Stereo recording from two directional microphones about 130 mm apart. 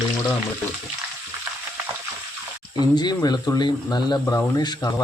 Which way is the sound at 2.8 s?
35° left (ahead or behind).